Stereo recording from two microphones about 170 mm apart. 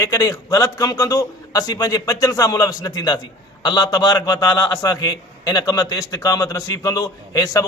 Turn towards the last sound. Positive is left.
turn(degrees=20)  # may be behind; listen again after turning